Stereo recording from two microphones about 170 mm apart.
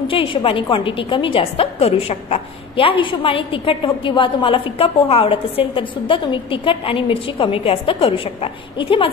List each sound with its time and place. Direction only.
0.1 s a woman's voice: 30° left (ahead or behind)